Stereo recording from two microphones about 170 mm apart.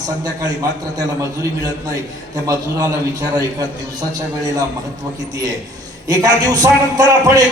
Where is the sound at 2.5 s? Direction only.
20° right (ahead or behind).